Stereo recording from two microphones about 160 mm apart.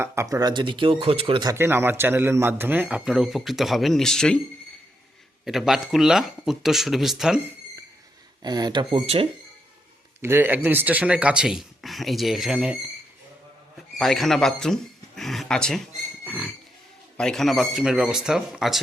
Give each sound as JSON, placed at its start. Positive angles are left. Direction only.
{"t": 0.0, "sound": "speech", "side_deg": -20}
{"t": 1.5, "sound": "a man's voice", "side_deg": -15}
{"t": 5.5, "sound": "speech", "side_deg": 0}
{"t": 8.4, "sound": "speech", "side_deg": -25}
{"t": 10.2, "sound": "a man's voice", "side_deg": -15}
{"t": 13.9, "sound": "speech", "side_deg": 0}
{"t": 16.2, "sound": "a sound", "side_deg": -10}
{"t": 17.2, "sound": "speech", "side_deg": 5}